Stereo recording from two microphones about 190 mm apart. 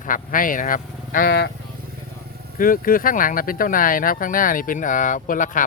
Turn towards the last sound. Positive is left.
turn(degrees=45)  # may be behind; listen again after turning